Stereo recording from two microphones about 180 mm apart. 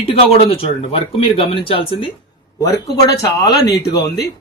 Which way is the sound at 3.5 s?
65° left (ahead or behind).